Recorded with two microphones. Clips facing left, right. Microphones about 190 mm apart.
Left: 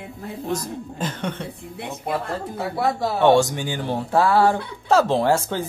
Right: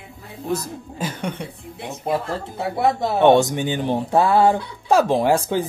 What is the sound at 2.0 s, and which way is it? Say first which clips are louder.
Speech: right 3 dB; 20° right (ahead or behind).